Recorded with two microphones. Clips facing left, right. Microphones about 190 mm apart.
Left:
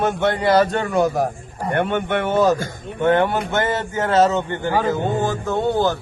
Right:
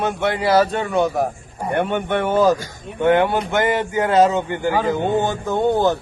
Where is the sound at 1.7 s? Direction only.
10° right (ahead or behind).